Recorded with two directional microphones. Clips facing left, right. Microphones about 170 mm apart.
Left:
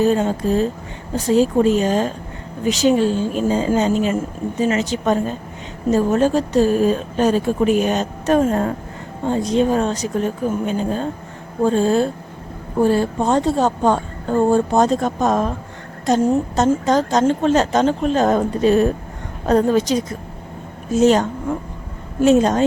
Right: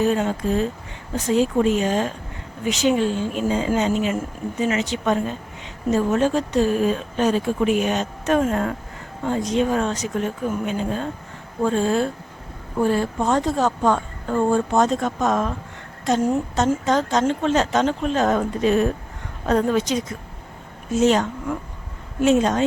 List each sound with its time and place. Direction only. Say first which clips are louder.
0.0 s a woman's voice: left 4 dB; 35° left (ahead or behind)